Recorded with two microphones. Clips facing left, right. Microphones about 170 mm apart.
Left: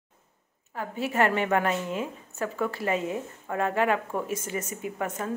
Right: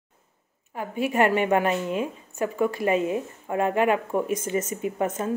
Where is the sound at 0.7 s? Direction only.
15° right (ahead or behind).